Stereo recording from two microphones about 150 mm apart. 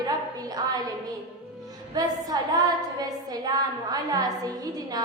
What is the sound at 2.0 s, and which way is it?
A woman's voice, 25° right (ahead or behind).